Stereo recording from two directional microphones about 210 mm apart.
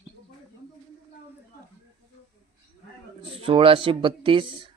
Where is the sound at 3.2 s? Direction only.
25° right (ahead or behind).